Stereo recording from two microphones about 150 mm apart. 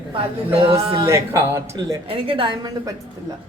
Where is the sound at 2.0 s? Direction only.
40° right (ahead or behind).